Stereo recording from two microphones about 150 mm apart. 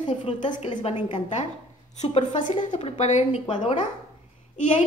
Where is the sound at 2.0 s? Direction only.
50° left (ahead or behind).